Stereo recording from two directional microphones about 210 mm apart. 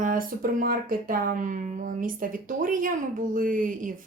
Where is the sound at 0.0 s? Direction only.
40° right (ahead or behind).